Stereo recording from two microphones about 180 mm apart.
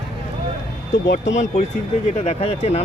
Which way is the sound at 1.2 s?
40° left (ahead or behind).